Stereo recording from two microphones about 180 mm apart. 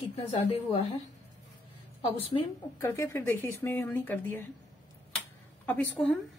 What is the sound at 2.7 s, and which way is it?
Speech, 20° left (ahead or behind).